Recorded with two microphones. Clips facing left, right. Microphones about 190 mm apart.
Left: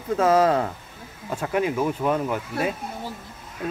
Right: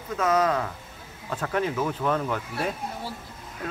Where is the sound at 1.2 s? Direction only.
10° left (ahead or behind).